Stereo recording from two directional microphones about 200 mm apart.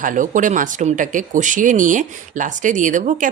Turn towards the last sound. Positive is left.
turn(degrees=-40)  # may be behind; listen again after turning